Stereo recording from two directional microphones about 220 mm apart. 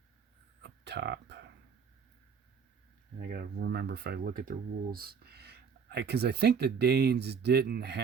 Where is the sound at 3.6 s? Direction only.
45° right (ahead or behind).